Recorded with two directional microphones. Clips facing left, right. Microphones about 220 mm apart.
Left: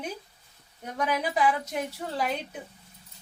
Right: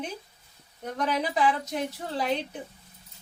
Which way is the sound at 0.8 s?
10° left (ahead or behind).